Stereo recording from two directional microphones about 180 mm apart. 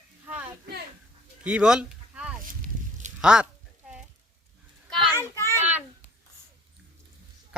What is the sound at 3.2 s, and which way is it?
Speech, 5° right (ahead or behind).